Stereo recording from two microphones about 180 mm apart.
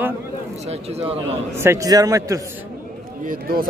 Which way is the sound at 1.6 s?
15° right (ahead or behind).